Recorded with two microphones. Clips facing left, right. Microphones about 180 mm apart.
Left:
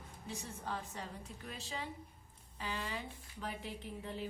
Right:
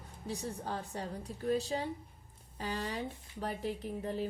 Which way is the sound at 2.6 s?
45° right (ahead or behind).